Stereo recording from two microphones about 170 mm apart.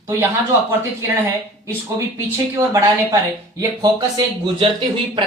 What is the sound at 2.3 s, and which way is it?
Speech, 15° right (ahead or behind).